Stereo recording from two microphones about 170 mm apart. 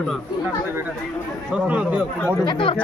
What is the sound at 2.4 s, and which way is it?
Speech, 30° left (ahead or behind).